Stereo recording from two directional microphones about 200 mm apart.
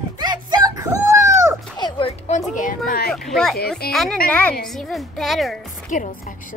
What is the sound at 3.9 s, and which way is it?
A woman's voice, centre (ahead or behind).